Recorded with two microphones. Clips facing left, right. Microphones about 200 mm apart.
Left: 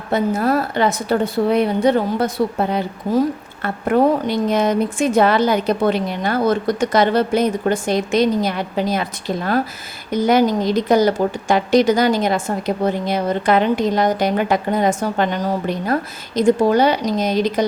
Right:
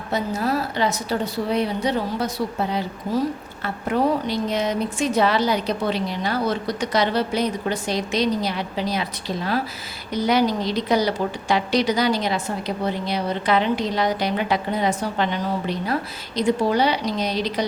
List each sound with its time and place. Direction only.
0.1 s speech: 55° left (ahead or behind)